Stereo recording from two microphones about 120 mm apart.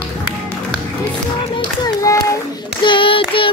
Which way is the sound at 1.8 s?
25° left (ahead or behind).